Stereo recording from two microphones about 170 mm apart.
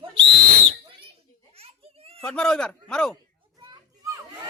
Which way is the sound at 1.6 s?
35° right (ahead or behind).